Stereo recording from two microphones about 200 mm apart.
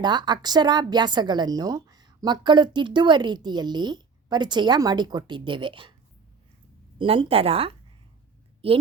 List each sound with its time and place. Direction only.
0.0 s speech: 20° right (ahead or behind)
7.0 s speech: 25° right (ahead or behind)